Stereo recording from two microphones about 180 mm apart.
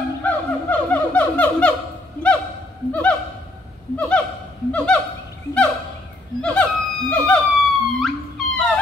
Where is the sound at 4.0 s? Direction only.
5° left (ahead or behind).